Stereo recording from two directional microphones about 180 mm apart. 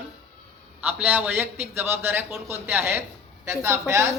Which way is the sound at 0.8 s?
10° right (ahead or behind).